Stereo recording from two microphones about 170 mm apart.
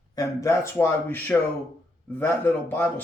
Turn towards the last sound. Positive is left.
turn(degrees=10)  # may be behind; listen again after turning